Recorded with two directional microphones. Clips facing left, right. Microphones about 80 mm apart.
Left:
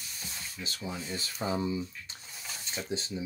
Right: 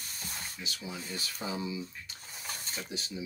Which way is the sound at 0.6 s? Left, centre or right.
Left.